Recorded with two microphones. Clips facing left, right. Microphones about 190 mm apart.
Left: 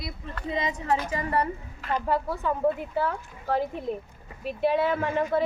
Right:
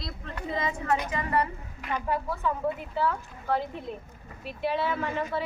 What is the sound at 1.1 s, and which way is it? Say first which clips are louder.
Speech: left 1 dB; 35° left (ahead or behind).